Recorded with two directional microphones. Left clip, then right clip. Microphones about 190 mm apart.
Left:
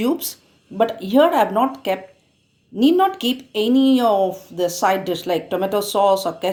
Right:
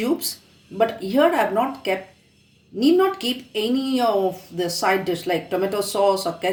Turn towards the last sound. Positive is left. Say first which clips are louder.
# left 3 dB
turn(degrees=40)  # may be behind; listen again after turning